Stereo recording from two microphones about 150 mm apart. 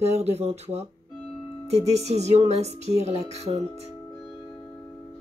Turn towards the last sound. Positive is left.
turn(degrees=-45)  # may be behind; listen again after turning